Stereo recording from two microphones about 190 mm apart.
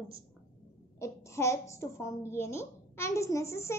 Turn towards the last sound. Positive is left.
turn(degrees=15)  # may be behind; listen again after turning